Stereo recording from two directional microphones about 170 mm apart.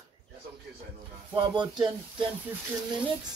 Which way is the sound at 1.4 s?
25° right (ahead or behind).